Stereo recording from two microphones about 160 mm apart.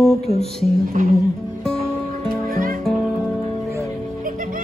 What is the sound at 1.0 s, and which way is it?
Music, 55° right (ahead or behind).